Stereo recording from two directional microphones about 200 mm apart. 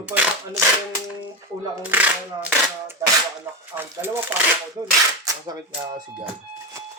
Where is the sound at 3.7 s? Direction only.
10° right (ahead or behind).